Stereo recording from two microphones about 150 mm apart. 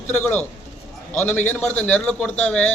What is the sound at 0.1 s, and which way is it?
A man's voice, 15° left (ahead or behind).